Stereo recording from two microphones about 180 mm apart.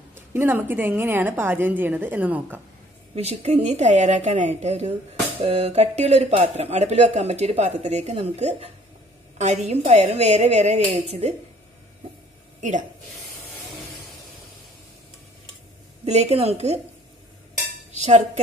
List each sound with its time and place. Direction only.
0.1 s a woman's voice: 10° right (ahead or behind)
3.2 s speech: 35° right (ahead or behind)
9.7 s speech: 35° right (ahead or behind)
12.5 s a sound: 45° right (ahead or behind)
16.1 s speech: 35° right (ahead or behind)
17.9 s speech: 40° right (ahead or behind)